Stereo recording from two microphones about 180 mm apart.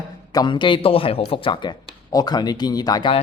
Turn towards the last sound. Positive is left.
turn(degrees=25)  # may be behind; listen again after turning